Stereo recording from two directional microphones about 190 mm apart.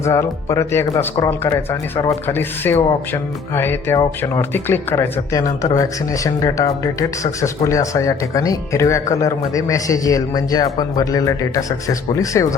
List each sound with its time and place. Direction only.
0.0 s speech: 15° left (ahead or behind)